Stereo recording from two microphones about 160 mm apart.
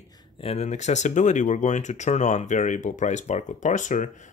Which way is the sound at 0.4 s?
40° left (ahead or behind).